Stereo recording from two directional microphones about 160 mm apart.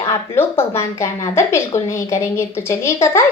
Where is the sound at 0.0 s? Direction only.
15° left (ahead or behind).